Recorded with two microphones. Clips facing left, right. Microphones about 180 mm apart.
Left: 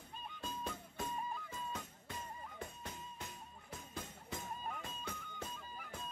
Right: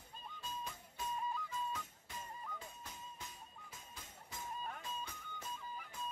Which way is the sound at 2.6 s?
60° left (ahead or behind).